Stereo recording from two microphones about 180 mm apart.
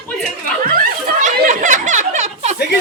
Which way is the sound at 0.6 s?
50° right (ahead or behind).